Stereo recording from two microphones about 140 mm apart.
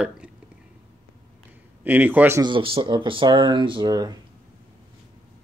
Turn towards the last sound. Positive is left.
turn(degrees=-25)  # may be behind; listen again after turning